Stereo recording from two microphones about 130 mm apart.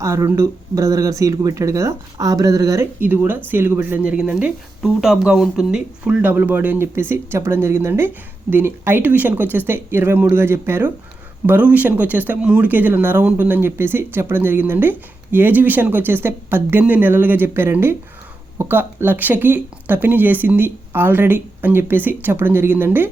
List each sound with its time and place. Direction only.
0.0 s speech: 20° right (ahead or behind)
3.0 s speech: 15° right (ahead or behind)